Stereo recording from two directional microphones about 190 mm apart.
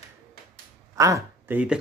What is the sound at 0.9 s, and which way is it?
Speech, 15° right (ahead or behind).